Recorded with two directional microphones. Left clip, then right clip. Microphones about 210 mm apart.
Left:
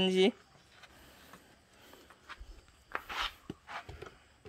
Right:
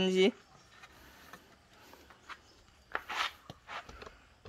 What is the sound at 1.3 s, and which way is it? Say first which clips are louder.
Vehicle: right 5 dB; 5° left (ahead or behind).